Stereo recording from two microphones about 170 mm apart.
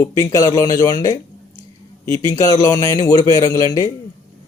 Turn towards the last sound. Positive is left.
turn(degrees=20)  # may be behind; listen again after turning